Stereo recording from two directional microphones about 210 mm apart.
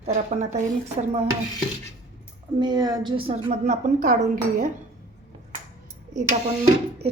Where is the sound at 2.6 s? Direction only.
20° right (ahead or behind); by 4.7 s 40° right (ahead or behind).